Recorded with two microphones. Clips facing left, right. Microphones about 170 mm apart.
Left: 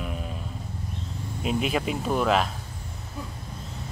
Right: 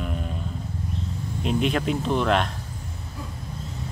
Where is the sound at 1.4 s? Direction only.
5° left (ahead or behind).